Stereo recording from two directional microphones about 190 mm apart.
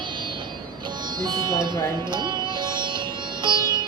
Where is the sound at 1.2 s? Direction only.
20° right (ahead or behind).